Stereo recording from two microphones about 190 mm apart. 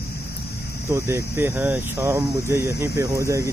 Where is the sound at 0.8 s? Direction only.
15° right (ahead or behind).